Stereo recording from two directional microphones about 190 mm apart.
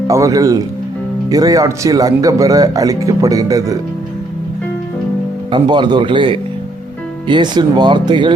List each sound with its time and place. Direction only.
0.1 s speech: 15° right (ahead or behind)
5.5 s speech: 25° right (ahead or behind)